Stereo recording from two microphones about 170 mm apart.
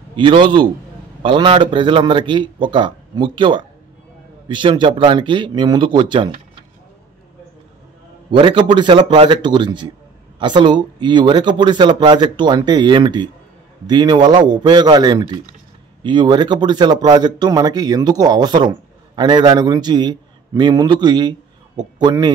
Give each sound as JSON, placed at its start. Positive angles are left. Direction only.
{"t": 0.1, "sound": "speech", "side_deg": -30}
{"t": 8.3, "sound": "a man's voice", "side_deg": -30}